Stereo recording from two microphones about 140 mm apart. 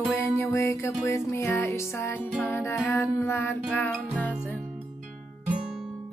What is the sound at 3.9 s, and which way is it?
Music, 5° left (ahead or behind).